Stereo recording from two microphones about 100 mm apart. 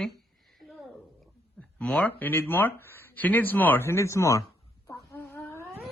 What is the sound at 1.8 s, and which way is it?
Speech, 10° left (ahead or behind).